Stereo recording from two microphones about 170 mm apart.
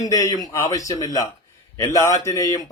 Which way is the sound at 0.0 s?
20° left (ahead or behind).